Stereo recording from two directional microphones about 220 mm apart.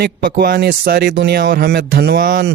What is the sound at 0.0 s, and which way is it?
Speech, 45° right (ahead or behind).